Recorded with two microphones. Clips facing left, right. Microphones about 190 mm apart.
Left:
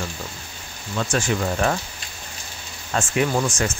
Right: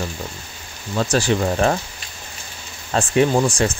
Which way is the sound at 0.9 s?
35° right (ahead or behind).